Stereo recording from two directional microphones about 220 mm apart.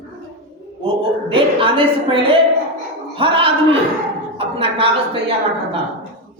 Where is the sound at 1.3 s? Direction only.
25° right (ahead or behind).